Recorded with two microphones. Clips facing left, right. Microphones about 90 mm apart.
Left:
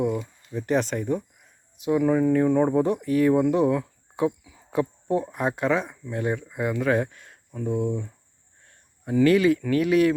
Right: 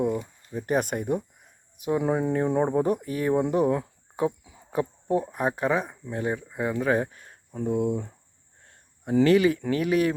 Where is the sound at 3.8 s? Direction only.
25° right (ahead or behind).